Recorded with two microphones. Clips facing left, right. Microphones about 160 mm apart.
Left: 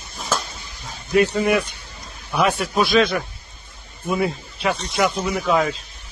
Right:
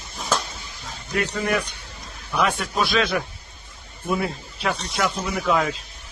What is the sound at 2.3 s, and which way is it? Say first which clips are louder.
A man's voice: left 3 dB; 10° left (ahead or behind).